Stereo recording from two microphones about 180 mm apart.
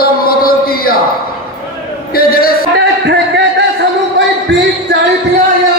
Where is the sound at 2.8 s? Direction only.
75° right (ahead or behind).